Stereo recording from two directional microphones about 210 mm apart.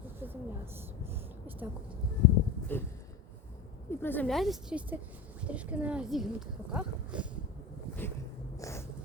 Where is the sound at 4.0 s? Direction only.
10° left (ahead or behind).